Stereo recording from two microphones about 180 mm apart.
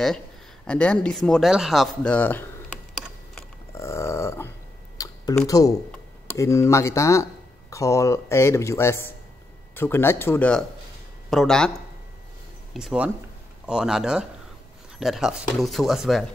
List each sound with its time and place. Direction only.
0.7 s speech: 5° left (ahead or behind)
3.7 s grunt: 15° left (ahead or behind)
4.9 s a sound: 20° left (ahead or behind)
5.5 s speech: 20° left (ahead or behind); by 11.7 s 5° left (ahead or behind)
12.7 s speech: 5° right (ahead or behind)